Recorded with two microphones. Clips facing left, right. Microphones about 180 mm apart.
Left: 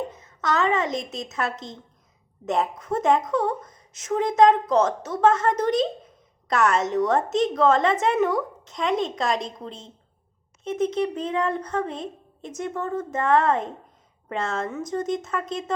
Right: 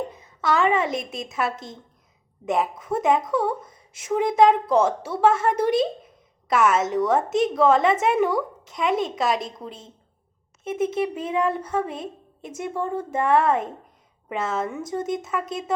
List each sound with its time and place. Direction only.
0.4 s a woman's voice: 10° right (ahead or behind)
1.5 s a woman's voice: 20° left (ahead or behind)
2.5 s a woman's voice: 5° right (ahead or behind)
10.6 s a woman's voice: 10° right (ahead or behind)